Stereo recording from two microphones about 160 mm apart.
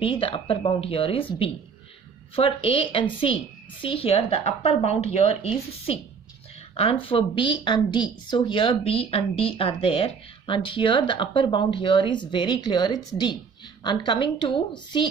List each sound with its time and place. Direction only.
0.0 s a woman's voice: 35° left (ahead or behind)